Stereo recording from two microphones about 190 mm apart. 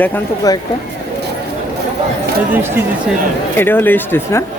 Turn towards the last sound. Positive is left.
turn(degrees=10)  # may be behind; listen again after turning